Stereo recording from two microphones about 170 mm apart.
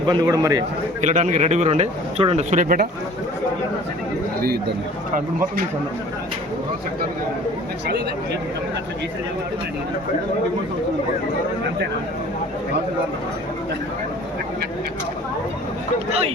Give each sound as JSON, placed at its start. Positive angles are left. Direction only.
{"t": 0.0, "sound": "a man's voice", "side_deg": -25}
{"t": 1.0, "sound": "speech", "side_deg": -45}
{"t": 4.4, "sound": "a man's voice", "side_deg": -65}